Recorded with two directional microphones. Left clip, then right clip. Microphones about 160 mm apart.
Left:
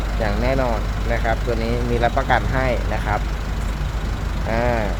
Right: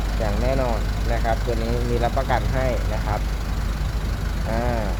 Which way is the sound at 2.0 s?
30° left (ahead or behind).